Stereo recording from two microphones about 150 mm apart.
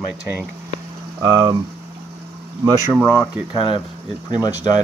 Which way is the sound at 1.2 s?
25° right (ahead or behind).